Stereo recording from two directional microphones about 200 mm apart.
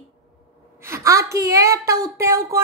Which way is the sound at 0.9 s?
15° right (ahead or behind).